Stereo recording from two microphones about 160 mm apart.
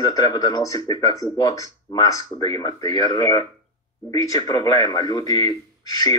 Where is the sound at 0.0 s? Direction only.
25° left (ahead or behind).